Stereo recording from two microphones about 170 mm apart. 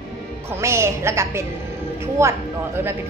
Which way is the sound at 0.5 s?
15° right (ahead or behind).